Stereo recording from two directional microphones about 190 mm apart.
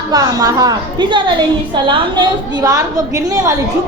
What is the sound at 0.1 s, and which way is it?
A woman's voice, 20° right (ahead or behind).